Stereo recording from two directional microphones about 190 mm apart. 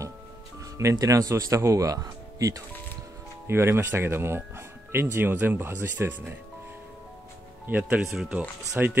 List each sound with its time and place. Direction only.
0.7 s speech: 15° right (ahead or behind)
7.6 s speech: 10° right (ahead or behind)